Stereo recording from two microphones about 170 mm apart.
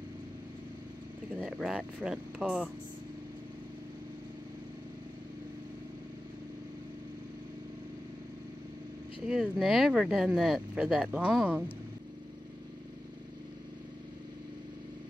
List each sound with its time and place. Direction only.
1.3 s speech: 5° right (ahead or behind)
9.2 s speech: centre (ahead or behind)